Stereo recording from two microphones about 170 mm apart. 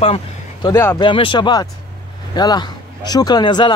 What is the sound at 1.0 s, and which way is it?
Speech, 30° left (ahead or behind).